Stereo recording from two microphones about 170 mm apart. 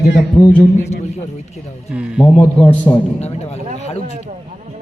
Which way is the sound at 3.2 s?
40° left (ahead or behind).